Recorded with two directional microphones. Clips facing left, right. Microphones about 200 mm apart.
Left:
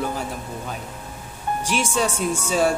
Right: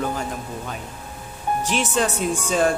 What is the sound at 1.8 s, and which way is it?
Speech, 10° left (ahead or behind).